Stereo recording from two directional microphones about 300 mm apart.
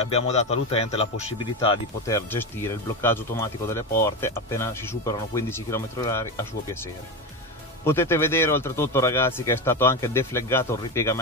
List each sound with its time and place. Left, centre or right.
0.0 s a man's voice: left
7.8 s speech: centre